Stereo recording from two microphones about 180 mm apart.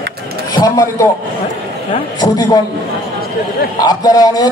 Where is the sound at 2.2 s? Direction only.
20° left (ahead or behind).